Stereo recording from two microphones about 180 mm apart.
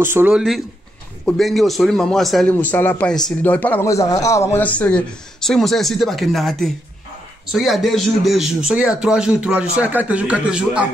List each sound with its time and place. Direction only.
0.0 s a man's voice: 10° right (ahead or behind)